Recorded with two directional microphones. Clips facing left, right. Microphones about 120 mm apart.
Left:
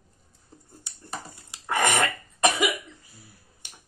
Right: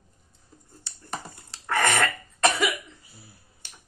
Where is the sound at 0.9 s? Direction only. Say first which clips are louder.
Right 1 dB; 15° left (ahead or behind).